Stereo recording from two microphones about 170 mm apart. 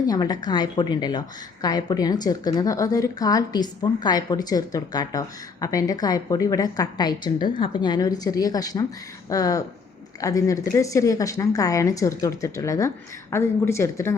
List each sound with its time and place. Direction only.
0.1 s a woman's voice: 25° left (ahead or behind)